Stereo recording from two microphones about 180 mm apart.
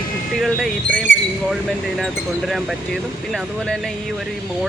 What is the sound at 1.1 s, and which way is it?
Speech, 90° left.